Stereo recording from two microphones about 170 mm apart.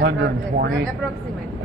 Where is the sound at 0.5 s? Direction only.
70° right (ahead or behind).